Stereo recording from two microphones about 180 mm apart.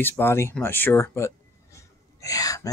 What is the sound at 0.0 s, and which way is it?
Speech, 15° left (ahead or behind).